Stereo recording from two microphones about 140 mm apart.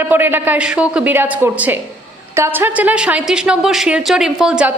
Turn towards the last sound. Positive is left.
turn(degrees=-5)  # may be behind; listen again after turning